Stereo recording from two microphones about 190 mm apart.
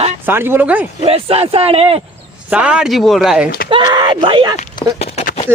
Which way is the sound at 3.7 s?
25° right (ahead or behind).